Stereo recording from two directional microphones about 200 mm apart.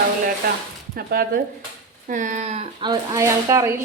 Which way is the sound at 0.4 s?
50° right (ahead or behind).